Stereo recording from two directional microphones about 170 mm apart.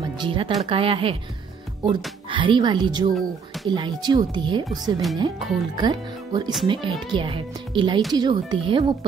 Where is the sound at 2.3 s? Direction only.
30° right (ahead or behind).